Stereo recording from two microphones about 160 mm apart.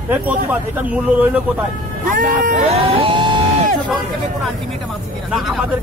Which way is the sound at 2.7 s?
35° right (ahead or behind).